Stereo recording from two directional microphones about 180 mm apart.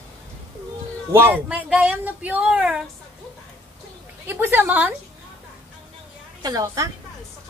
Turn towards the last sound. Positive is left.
turn(degrees=-20)  # may be behind; listen again after turning